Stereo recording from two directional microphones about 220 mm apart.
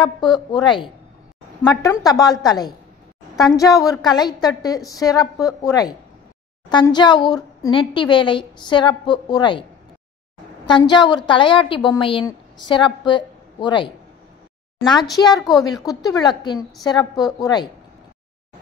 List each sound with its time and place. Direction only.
0.0 s a woman's voice: 20° left (ahead or behind)
10.7 s a woman's voice: 20° left (ahead or behind)
15.1 s a woman's voice: 15° left (ahead or behind)